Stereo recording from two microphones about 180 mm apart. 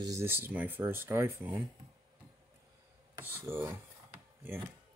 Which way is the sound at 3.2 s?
10° right (ahead or behind).